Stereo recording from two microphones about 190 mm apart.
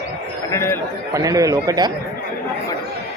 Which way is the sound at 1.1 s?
15° right (ahead or behind).